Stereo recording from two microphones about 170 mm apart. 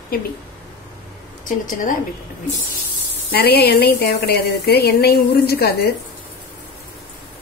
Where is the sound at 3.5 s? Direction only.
70° left (ahead or behind).